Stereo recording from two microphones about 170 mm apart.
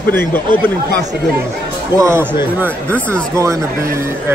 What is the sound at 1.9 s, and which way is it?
Speech, 15° right (ahead or behind).